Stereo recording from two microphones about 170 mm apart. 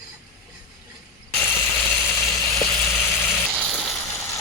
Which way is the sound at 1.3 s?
15° left (ahead or behind).